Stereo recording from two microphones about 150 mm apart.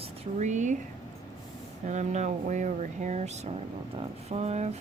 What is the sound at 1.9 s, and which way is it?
Speech, 55° right (ahead or behind).